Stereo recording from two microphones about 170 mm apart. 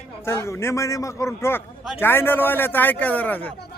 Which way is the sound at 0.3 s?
15° left (ahead or behind).